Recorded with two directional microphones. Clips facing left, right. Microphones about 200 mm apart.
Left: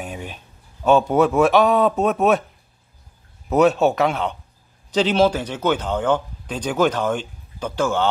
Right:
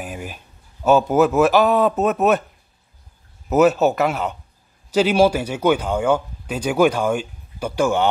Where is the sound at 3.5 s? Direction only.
5° right (ahead or behind).